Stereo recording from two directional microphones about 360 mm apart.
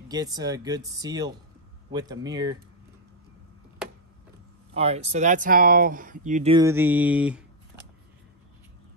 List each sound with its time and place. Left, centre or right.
0.1 s speech: centre
3.8 s a sound: centre
4.7 s speech: centre